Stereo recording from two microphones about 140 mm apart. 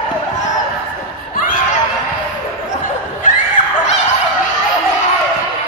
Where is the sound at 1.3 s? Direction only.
85° left.